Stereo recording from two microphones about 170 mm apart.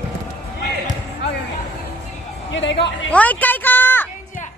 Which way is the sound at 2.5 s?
90° left.